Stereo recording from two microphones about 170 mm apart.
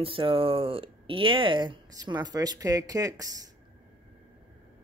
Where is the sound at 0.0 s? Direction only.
30° right (ahead or behind).